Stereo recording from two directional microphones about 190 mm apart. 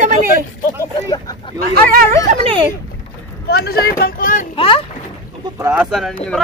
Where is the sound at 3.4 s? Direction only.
55° left (ahead or behind).